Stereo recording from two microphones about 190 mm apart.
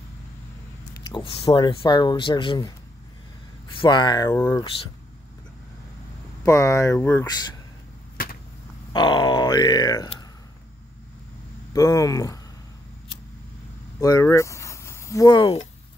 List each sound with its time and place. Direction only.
1.0 s speech: 25° left (ahead or behind)
3.8 s speech: 25° left (ahead or behind)
6.4 s speech: 15° left (ahead or behind)
8.9 s speech: 25° left (ahead or behind)
11.7 s speech: 20° left (ahead or behind)
14.0 s speech: 15° left (ahead or behind)